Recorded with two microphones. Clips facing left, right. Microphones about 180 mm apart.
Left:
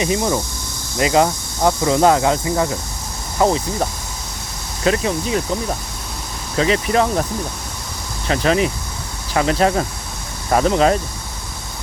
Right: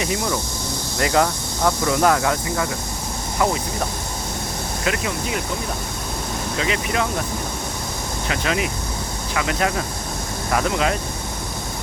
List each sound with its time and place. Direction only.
0.0 s speech: 25° left (ahead or behind)
4.9 s speech: 30° left (ahead or behind)
6.6 s speech: 35° left (ahead or behind)
8.3 s speech: 35° left (ahead or behind)